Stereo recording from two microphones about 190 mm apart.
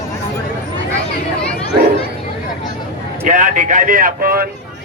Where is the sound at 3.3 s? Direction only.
45° right (ahead or behind).